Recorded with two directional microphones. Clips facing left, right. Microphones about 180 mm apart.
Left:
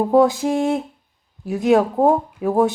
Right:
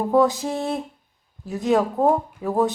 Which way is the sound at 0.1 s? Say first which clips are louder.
Left 2 dB; 15° left (ahead or behind).